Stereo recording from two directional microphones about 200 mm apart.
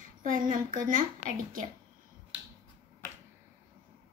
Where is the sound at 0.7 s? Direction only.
45° right (ahead or behind).